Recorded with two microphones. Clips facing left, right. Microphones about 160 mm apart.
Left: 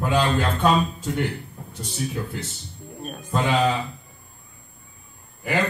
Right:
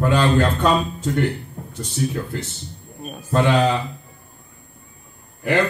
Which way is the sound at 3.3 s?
75° right (ahead or behind).